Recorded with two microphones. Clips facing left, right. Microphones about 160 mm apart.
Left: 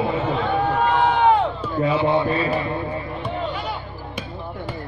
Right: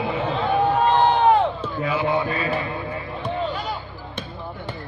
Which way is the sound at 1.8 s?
30° left (ahead or behind).